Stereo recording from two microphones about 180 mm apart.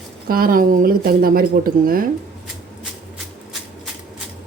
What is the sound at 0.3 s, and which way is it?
Speech, 55° right (ahead or behind).